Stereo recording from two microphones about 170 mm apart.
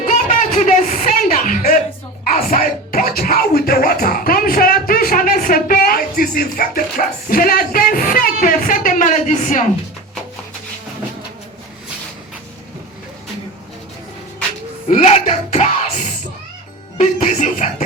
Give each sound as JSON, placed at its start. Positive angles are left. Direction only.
{"t": 0.0, "sound": "a sound", "side_deg": 45}
{"t": 2.2, "sound": "music", "side_deg": 55}
{"t": 14.8, "sound": "music", "side_deg": 40}